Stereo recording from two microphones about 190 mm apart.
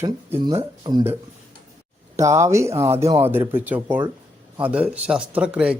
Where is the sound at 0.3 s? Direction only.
25° right (ahead or behind).